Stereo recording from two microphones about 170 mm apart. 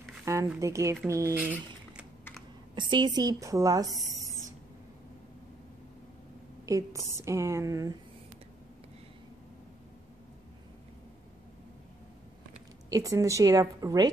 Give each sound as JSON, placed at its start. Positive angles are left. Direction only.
{"t": 0.2, "sound": "a sound", "side_deg": -15}
{"t": 0.6, "sound": "speech", "side_deg": -15}
{"t": 2.7, "sound": "speech", "side_deg": -25}
{"t": 6.6, "sound": "speech", "side_deg": -20}
{"t": 12.9, "sound": "speech", "side_deg": -20}